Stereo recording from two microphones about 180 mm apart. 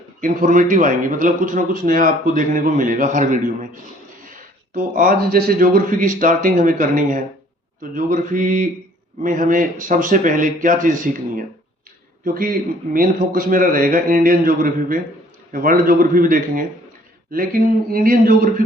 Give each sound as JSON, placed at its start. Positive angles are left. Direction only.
{"t": 0.2, "sound": "speech", "side_deg": -45}
{"t": 4.7, "sound": "speech", "side_deg": -50}